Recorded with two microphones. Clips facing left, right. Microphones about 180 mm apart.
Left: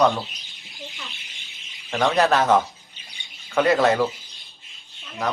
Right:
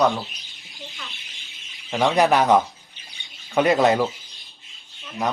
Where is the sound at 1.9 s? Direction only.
15° right (ahead or behind).